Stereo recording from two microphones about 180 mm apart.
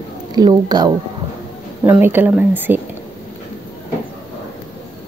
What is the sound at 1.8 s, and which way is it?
Speech, 10° right (ahead or behind).